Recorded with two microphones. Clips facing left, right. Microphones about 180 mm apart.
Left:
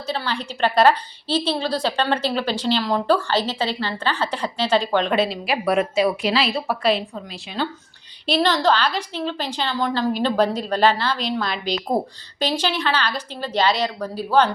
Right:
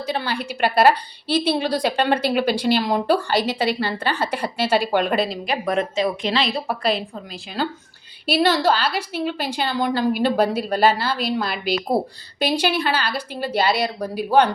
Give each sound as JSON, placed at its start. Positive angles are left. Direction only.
{"t": 0.0, "sound": "a woman's voice", "side_deg": -15}